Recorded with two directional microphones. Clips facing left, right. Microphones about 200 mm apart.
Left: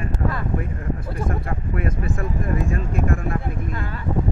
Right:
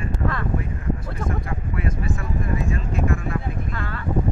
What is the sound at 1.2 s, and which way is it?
Speech, 55° left (ahead or behind).